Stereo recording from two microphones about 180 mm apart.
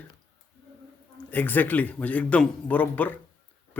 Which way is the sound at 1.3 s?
10° left (ahead or behind).